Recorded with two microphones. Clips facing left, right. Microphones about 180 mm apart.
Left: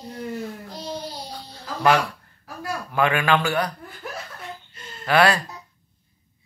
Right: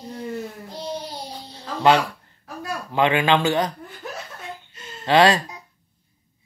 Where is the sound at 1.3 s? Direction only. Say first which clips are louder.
Right 2 dB; 25° right (ahead or behind).